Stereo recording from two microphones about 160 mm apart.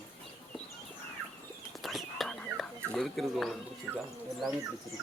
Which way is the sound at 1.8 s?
Centre (ahead or behind).